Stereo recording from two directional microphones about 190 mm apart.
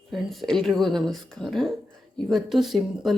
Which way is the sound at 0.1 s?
Centre (ahead or behind).